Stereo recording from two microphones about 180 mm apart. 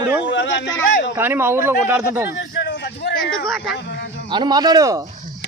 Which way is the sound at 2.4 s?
80° left.